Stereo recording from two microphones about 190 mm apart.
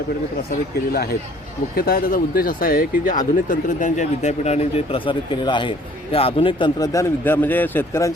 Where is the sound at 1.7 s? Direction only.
50° left (ahead or behind).